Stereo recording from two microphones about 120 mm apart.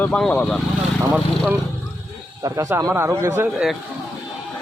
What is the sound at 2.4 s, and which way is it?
Speech, 25° right (ahead or behind).